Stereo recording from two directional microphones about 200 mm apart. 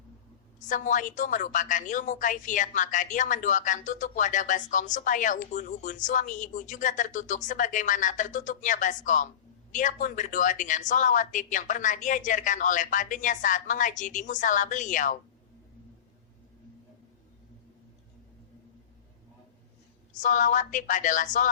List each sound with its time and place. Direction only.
0.7 s a woman's voice: 40° left (ahead or behind)
20.1 s a woman's voice: 40° left (ahead or behind)